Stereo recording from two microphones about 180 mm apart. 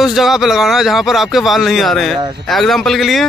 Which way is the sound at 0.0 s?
Centre (ahead or behind).